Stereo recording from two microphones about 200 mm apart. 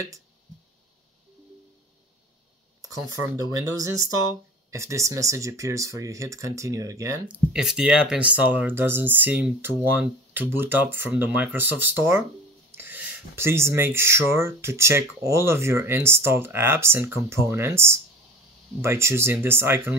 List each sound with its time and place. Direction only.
3.5 s speech: 15° right (ahead or behind)
7.5 s speech: 5° right (ahead or behind)